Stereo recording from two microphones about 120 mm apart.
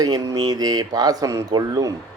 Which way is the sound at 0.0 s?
30° right (ahead or behind).